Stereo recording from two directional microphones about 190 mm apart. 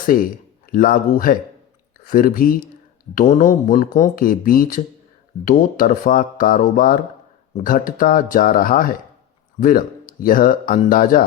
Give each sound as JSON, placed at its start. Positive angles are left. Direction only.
{"t": 0.7, "sound": "speech", "side_deg": 45}